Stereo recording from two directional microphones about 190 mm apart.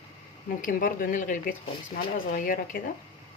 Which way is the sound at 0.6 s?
45° left (ahead or behind).